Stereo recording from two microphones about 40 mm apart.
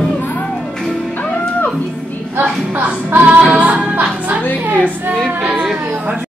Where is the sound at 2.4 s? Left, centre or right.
Right.